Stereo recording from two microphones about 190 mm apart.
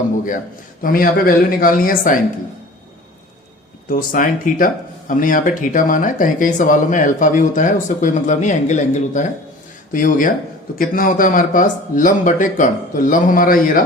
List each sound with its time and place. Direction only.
0.8 s speech: 50° left (ahead or behind)
3.8 s speech: 45° left (ahead or behind)